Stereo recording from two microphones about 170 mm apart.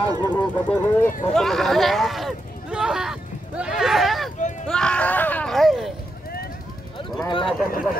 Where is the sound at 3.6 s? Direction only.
5° right (ahead or behind).